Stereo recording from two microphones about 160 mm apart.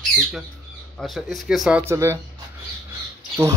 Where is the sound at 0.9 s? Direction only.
Centre (ahead or behind).